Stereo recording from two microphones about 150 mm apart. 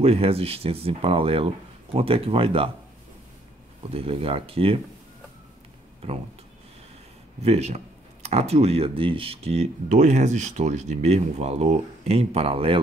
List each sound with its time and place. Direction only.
0.0 s speech: 40° right (ahead or behind)
3.8 s speech: 40° right (ahead or behind)
7.4 s speech: 45° right (ahead or behind)